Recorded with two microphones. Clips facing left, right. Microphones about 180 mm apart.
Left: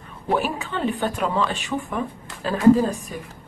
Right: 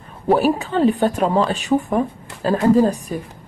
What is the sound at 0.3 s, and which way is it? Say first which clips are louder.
A woman's voice: right 7 dB; 40° right (ahead or behind).